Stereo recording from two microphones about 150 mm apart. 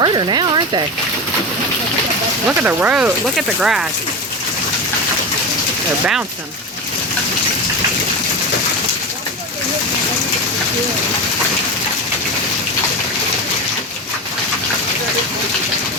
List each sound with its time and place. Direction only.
0.0 s speech: 30° right (ahead or behind)
2.6 s speech: 10° right (ahead or behind)